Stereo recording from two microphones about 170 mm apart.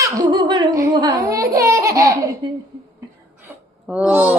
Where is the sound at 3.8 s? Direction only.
5° right (ahead or behind).